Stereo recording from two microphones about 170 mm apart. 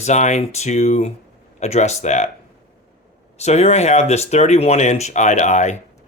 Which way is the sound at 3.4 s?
40° left (ahead or behind).